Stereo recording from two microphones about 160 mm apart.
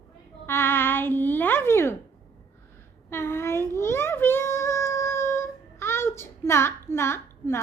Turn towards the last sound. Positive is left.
turn(degrees=15)  # may be behind; listen again after turning